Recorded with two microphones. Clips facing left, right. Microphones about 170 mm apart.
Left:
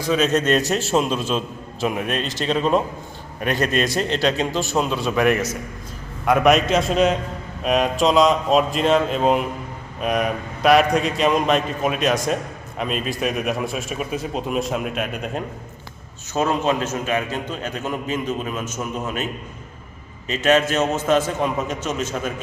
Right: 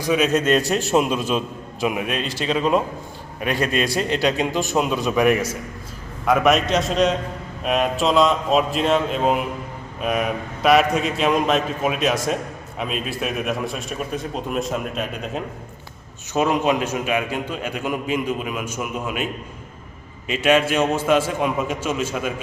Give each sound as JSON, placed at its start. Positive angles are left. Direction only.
{"t": 0.0, "sound": "a man's voice", "side_deg": -15}
{"t": 3.6, "sound": "a man's voice", "side_deg": 40}
{"t": 3.8, "sound": "a man's voice", "side_deg": -10}
{"t": 16.3, "sound": "a man's voice", "side_deg": -15}